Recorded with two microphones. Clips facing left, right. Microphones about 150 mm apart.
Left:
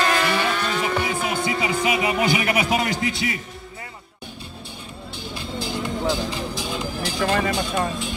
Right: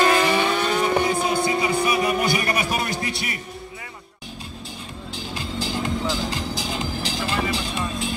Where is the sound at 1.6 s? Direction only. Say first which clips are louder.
Right 1 dB; 90° left.